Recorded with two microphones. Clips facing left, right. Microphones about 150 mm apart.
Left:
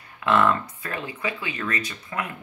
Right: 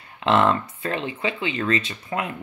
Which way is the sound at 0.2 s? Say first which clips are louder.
Right 2 dB; 25° right (ahead or behind).